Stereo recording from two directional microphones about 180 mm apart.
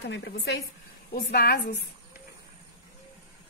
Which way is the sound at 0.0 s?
70° left (ahead or behind).